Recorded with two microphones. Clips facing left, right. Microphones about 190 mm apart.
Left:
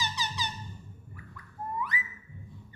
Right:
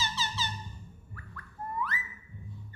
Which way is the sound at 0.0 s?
15° left (ahead or behind).